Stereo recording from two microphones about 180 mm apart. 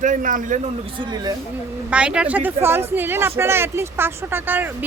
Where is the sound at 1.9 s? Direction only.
5° right (ahead or behind).